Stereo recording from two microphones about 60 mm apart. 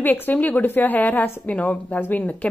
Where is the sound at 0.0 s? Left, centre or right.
Left.